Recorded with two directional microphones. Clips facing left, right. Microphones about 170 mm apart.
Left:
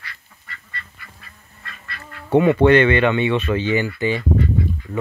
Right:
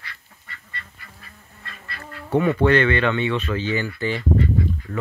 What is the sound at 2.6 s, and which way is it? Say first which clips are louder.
Speech: left 4 dB; 20° left (ahead or behind).